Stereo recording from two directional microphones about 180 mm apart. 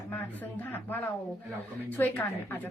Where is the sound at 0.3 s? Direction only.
10° left (ahead or behind).